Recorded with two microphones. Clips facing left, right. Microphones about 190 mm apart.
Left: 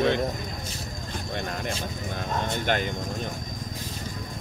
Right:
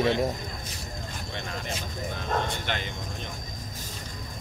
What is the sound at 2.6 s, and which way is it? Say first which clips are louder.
Speech: left 7 dB; 45° left (ahead or behind).